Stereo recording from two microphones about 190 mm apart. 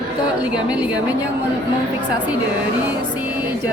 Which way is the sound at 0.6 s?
5° right (ahead or behind).